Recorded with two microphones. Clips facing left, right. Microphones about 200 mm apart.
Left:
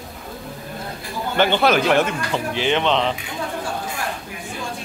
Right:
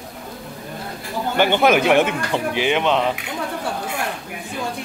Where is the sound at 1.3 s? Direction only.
15° right (ahead or behind).